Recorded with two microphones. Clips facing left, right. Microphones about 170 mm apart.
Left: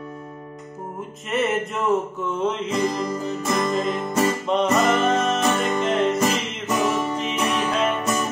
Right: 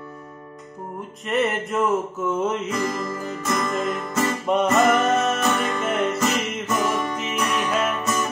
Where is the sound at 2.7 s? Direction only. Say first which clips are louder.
Left 3 dB; 20° left (ahead or behind).